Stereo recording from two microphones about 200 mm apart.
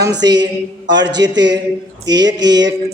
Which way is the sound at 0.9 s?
60° right (ahead or behind).